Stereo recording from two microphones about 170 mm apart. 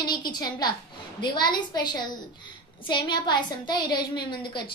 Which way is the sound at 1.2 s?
25° left (ahead or behind).